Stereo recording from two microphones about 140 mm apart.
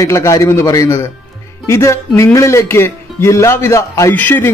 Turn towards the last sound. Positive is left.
turn(degrees=15)  # may be behind; listen again after turning